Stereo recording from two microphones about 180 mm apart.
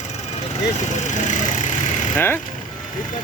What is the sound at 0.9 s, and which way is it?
Vehicle, 40° left (ahead or behind).